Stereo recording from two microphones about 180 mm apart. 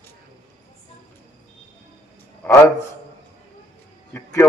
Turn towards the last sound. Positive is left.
turn(degrees=15)  # may be behind; listen again after turning